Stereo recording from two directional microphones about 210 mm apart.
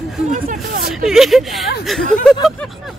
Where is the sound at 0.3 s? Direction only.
40° right (ahead or behind).